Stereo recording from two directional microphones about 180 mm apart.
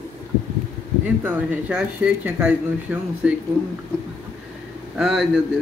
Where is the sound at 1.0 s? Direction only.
10° right (ahead or behind).